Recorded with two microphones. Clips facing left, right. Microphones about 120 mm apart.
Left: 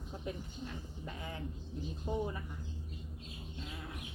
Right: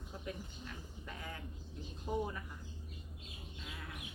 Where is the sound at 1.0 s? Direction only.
25° left (ahead or behind).